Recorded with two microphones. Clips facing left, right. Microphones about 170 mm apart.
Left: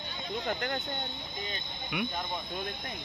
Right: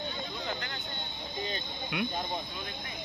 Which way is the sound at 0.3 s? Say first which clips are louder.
Left 5 dB; 55° left (ahead or behind).